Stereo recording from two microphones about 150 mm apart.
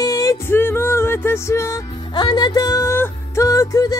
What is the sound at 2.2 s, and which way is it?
Music, 30° left (ahead or behind).